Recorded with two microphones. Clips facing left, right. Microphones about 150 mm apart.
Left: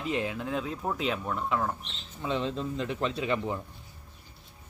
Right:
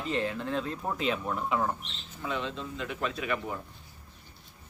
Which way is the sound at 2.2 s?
30° left (ahead or behind).